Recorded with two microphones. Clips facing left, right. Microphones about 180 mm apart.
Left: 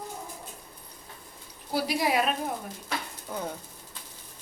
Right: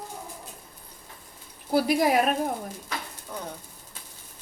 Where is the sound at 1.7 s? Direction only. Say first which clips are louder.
Right 5 dB; 50° right (ahead or behind).